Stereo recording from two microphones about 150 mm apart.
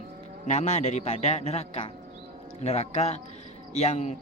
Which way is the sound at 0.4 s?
50° left (ahead or behind).